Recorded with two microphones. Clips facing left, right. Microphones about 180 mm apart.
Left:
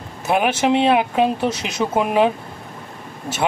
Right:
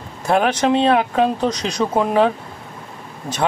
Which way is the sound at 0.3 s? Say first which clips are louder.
Right 1 dB; 5° left (ahead or behind).